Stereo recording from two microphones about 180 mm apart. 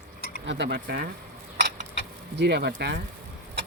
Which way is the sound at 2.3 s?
70° right (ahead or behind).